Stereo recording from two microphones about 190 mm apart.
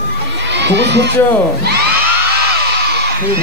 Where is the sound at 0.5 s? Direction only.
65° right (ahead or behind).